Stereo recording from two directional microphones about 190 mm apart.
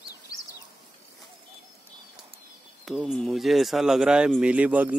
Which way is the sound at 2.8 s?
Centre (ahead or behind).